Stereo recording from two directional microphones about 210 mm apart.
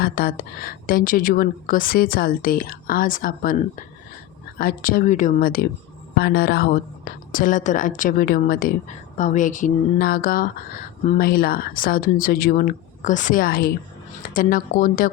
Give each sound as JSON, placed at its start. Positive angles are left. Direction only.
{"t": 0.0, "sound": "a woman's voice", "side_deg": 45}